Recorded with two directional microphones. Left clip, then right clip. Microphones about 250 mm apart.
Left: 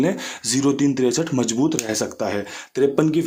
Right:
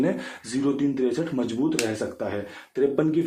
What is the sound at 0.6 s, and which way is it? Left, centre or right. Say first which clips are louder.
Speech: left 4 dB; left.